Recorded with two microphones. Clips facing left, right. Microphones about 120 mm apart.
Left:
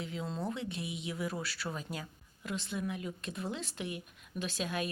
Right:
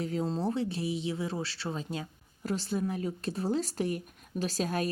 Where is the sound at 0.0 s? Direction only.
40° right (ahead or behind).